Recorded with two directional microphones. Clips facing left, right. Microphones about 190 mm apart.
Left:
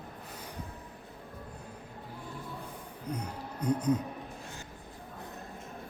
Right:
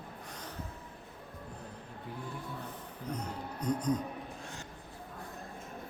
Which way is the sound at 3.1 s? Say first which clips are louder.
Left 1 dB; 10° left (ahead or behind).